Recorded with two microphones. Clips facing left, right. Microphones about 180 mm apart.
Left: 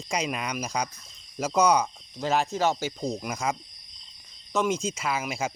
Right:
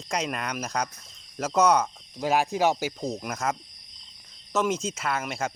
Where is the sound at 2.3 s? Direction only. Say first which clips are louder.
Right 2 dB; 10° right (ahead or behind).